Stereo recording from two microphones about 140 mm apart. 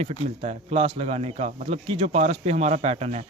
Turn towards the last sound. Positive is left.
turn(degrees=-50)  # may be behind; listen again after turning